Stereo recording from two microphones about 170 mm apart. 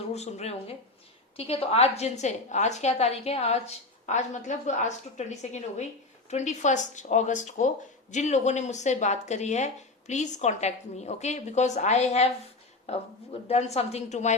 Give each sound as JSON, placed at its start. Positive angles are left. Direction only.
{"t": 0.1, "sound": "a woman's voice", "side_deg": 40}